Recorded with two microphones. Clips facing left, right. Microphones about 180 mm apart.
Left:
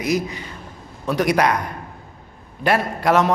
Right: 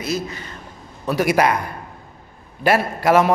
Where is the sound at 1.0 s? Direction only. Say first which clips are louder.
Right 1 dB; 5° right (ahead or behind).